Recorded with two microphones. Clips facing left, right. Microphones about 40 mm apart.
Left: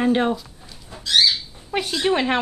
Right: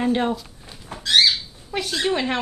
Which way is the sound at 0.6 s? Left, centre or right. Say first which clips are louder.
Right 4 dB; right.